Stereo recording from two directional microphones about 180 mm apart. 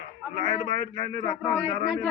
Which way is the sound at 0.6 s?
50° right (ahead or behind).